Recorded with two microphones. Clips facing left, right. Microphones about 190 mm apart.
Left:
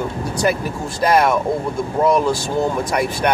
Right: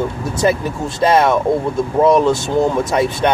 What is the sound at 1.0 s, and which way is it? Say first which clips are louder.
Speech: right 2 dB; 25° right (ahead or behind).